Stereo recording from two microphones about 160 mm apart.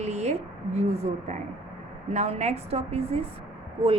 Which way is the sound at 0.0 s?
45° right (ahead or behind).